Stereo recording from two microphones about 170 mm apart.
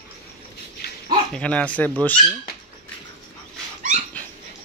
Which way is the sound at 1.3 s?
5° left (ahead or behind).